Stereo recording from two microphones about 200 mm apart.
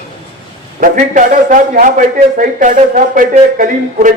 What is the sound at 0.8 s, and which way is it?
A man's voice, 40° right (ahead or behind).